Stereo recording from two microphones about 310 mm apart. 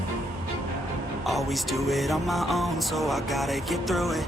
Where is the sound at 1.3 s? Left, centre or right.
Centre.